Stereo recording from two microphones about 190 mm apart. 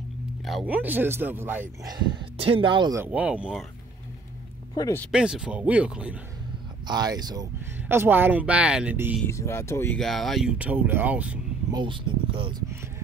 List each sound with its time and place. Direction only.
0.5 s speech: 5° right (ahead or behind)
1.9 s speech: 25° right (ahead or behind)
3.0 s speech: 5° right (ahead or behind)
4.7 s speech: 15° left (ahead or behind)
5.1 s speech: 5° right (ahead or behind)
6.9 s speech: 20° right (ahead or behind)
9.2 s speech: 15° left (ahead or behind)
9.9 s speech: centre (ahead or behind)
11.7 s speech: 25° right (ahead or behind)